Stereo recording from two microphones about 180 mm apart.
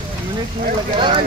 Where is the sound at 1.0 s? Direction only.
25° right (ahead or behind).